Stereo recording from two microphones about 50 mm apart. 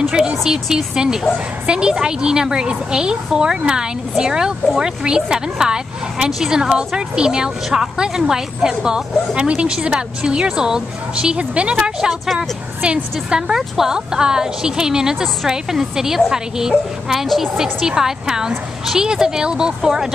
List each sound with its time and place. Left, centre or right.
0.1 s a woman's voice: centre
13.5 s a woman's voice: centre